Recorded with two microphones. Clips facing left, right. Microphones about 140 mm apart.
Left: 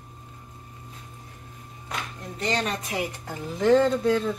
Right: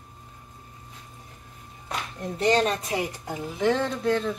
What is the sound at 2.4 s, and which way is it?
Speech, 35° right (ahead or behind).